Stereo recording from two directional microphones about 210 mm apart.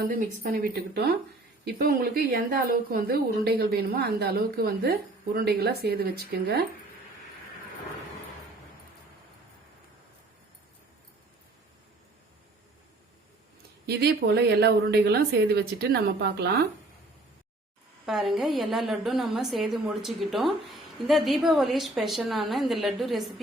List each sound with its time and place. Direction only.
0.1 s a woman's voice: 40° right (ahead or behind)
13.8 s a woman's voice: 50° right (ahead or behind)
18.0 s a woman's voice: centre (ahead or behind)